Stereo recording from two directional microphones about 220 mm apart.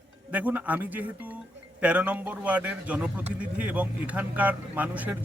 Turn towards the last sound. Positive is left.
turn(degrees=-5)  # may be behind; listen again after turning